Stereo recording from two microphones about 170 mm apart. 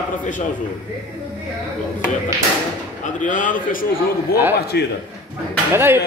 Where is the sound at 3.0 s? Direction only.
50° left (ahead or behind).